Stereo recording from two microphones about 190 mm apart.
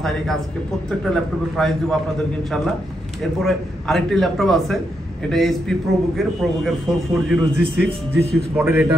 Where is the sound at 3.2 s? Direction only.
Centre (ahead or behind).